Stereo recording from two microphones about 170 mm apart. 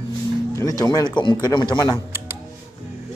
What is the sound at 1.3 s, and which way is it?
Speech, 25° left (ahead or behind).